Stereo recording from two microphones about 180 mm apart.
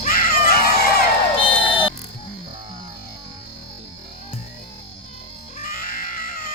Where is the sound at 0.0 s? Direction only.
50° left (ahead or behind).